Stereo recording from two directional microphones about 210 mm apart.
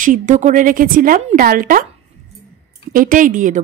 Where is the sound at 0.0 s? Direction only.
40° right (ahead or behind).